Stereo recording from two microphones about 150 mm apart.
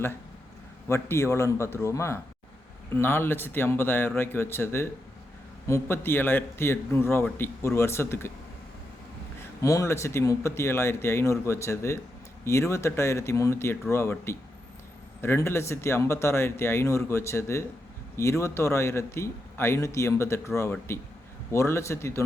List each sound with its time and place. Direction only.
0.9 s speech: 15° left (ahead or behind)
9.4 s speech: 20° left (ahead or behind)